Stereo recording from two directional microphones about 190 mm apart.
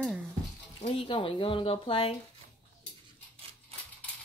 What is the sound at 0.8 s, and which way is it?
Speech, 30° left (ahead or behind).